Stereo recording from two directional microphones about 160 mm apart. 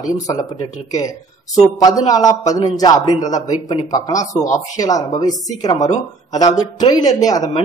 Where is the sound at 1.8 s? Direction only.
25° left (ahead or behind).